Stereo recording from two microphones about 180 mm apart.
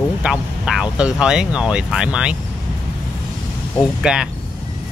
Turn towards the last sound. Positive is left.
turn(degrees=-5)  # may be behind; listen again after turning